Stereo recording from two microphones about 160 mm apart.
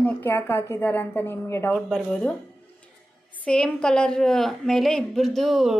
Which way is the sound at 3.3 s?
5° left (ahead or behind).